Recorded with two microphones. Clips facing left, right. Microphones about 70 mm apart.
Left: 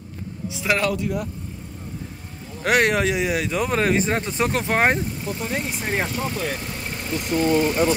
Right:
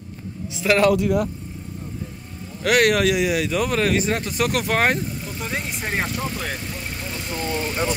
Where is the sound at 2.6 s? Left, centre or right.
Left.